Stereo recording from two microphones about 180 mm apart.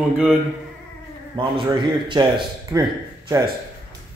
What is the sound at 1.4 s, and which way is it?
A man's voice, 25° right (ahead or behind).